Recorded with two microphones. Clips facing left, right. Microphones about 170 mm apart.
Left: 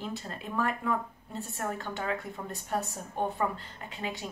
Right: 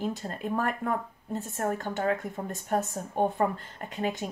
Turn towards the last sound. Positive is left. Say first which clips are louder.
# right 6 dB
turn(degrees=-45)  # may be behind; listen again after turning